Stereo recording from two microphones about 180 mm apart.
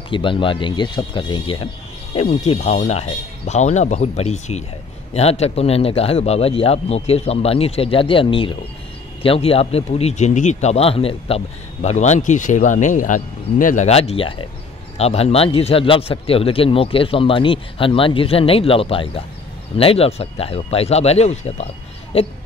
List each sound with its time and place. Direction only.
0.1 s speech: 30° left (ahead or behind)